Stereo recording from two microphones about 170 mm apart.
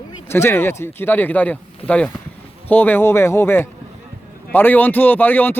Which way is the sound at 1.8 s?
35° left (ahead or behind).